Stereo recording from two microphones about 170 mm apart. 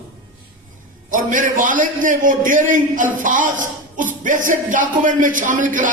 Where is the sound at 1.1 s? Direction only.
50° right (ahead or behind).